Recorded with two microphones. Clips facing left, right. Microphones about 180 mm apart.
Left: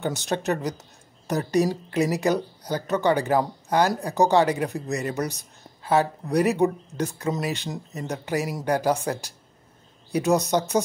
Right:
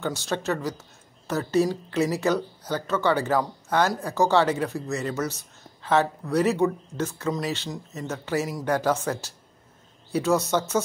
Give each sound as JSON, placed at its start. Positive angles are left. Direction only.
{"t": 0.0, "sound": "speech", "side_deg": 20}
{"t": 5.2, "sound": "a sound", "side_deg": 15}
{"t": 6.3, "sound": "speech", "side_deg": 15}